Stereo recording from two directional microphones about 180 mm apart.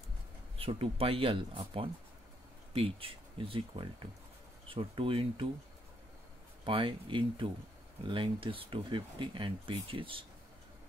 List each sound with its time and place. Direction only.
0.6 s speech: 30° right (ahead or behind)
6.6 s speech: 30° right (ahead or behind)